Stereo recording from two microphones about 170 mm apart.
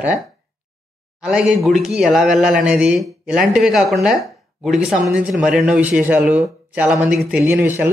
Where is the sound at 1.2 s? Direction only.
5° right (ahead or behind).